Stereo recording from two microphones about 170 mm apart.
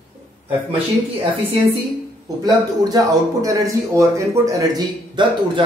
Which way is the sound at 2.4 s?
20° right (ahead or behind).